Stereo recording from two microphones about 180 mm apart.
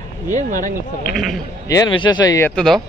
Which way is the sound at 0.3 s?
45° right (ahead or behind).